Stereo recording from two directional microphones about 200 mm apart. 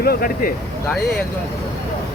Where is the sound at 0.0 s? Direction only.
50° left (ahead or behind).